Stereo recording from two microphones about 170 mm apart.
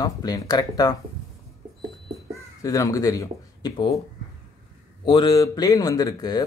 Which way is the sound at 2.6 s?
20° left (ahead or behind).